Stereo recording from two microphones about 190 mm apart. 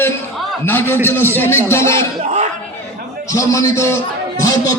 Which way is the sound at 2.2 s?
35° right (ahead or behind).